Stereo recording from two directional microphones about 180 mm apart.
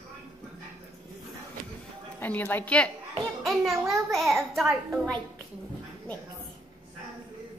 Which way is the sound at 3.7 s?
20° right (ahead or behind).